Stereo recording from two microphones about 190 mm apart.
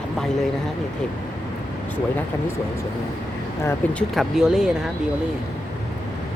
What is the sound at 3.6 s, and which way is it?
Speech, 5° left (ahead or behind).